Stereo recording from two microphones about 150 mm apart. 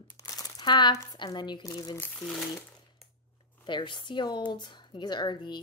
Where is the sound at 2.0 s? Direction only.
10° left (ahead or behind).